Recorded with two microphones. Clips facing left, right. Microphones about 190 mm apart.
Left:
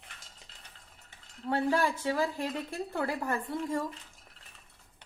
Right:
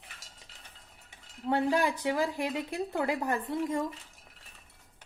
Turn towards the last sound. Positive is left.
turn(degrees=-20)  # may be behind; listen again after turning